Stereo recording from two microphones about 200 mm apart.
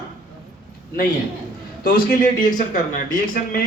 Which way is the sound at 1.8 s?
45° left (ahead or behind).